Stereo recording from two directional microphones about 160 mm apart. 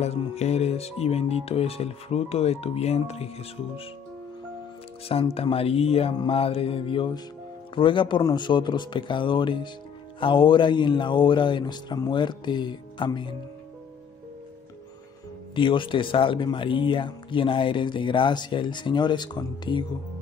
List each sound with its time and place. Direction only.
0.0 s speech: 40° left (ahead or behind)
5.0 s speech: 35° left (ahead or behind)
15.5 s speech: 30° left (ahead or behind)